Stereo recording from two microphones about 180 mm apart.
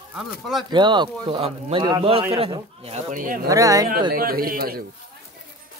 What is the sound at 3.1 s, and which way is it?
Speech, 50° right (ahead or behind).